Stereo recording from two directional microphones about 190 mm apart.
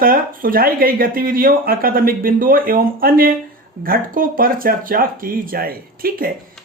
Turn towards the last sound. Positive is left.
turn(degrees=-50)  # may be behind; listen again after turning